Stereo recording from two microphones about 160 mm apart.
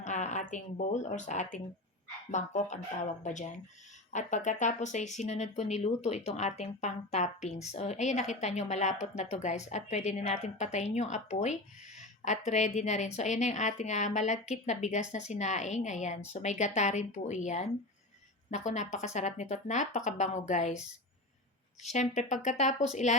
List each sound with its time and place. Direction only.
0.0 s speech: 50° left (ahead or behind)
11.9 s a sound: 45° left (ahead or behind)
12.5 s speech: 45° left (ahead or behind)
21.8 s speech: 45° left (ahead or behind)